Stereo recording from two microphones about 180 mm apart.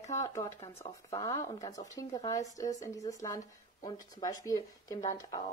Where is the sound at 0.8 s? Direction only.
20° left (ahead or behind).